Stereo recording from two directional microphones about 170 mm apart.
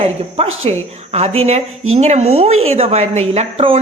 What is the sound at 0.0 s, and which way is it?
Speech, 35° right (ahead or behind).